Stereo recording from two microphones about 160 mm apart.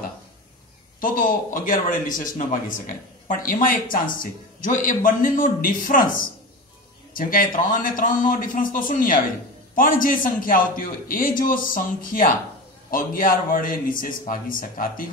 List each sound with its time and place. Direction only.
1.0 s a man's voice: 60° left (ahead or behind)